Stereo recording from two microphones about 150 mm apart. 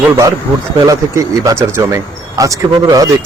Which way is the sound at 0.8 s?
25° right (ahead or behind).